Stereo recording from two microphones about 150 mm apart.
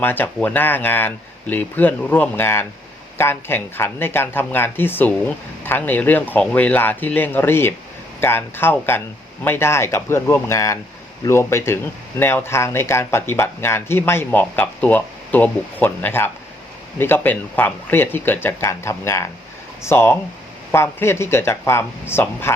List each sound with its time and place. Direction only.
0.0 s speech: 15° left (ahead or behind)